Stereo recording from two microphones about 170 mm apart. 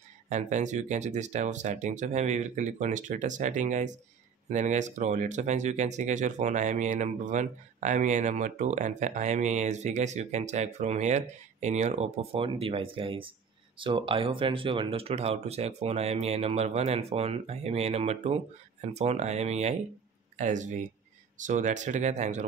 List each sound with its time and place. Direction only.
0.3 s speech: 45° right (ahead or behind)